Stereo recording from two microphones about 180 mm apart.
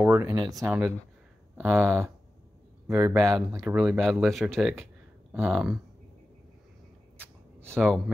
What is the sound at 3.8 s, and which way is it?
Speech, centre (ahead or behind).